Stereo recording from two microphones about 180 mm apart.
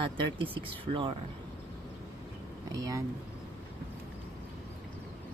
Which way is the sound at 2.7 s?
20° right (ahead or behind).